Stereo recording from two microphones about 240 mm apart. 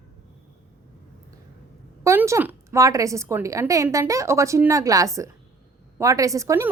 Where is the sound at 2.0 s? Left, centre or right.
Centre.